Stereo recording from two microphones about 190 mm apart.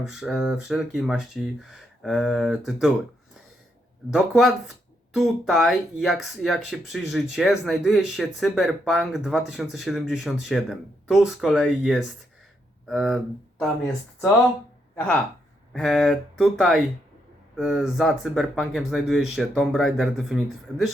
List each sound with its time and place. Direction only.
0.1 s speech: centre (ahead or behind)
4.1 s speech: centre (ahead or behind)